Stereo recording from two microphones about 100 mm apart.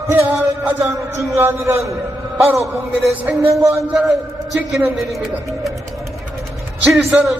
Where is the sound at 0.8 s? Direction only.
30° right (ahead or behind).